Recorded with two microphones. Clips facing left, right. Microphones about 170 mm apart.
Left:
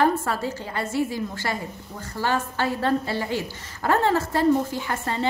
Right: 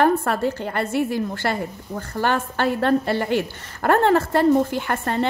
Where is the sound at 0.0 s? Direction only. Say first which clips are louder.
Right 4 dB; 60° right (ahead or behind).